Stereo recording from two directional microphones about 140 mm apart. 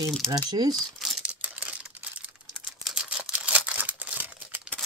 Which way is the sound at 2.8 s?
5° right (ahead or behind).